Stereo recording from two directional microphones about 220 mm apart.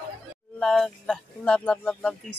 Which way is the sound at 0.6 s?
Centre (ahead or behind).